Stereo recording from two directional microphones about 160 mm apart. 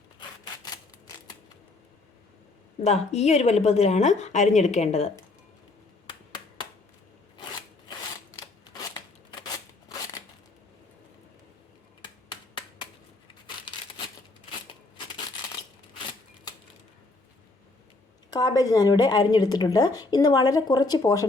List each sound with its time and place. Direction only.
0.6 s typewriter: 25° left (ahead or behind)
2.8 s speech: 45° left (ahead or behind)
12.0 s finger snapping: 30° left (ahead or behind)
18.3 s a woman's voice: 25° left (ahead or behind)